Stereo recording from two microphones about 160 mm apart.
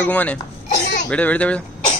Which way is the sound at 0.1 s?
10° left (ahead or behind).